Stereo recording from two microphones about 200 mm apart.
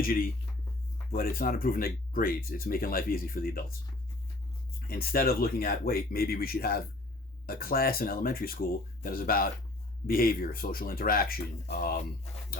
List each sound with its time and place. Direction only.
0.0 s speech: 45° left (ahead or behind)
4.9 s speech: 50° left (ahead or behind)